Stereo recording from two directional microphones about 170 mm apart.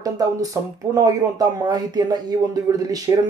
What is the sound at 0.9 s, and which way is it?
Speech, 20° right (ahead or behind).